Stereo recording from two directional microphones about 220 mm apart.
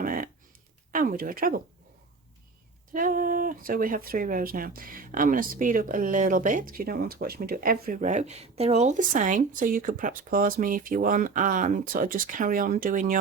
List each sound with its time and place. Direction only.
0.0 s a sound: 40° right (ahead or behind)
0.9 s speech: 40° right (ahead or behind)
2.9 s speech: 40° right (ahead or behind)